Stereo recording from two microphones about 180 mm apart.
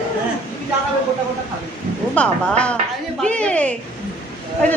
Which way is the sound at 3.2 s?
5° left (ahead or behind).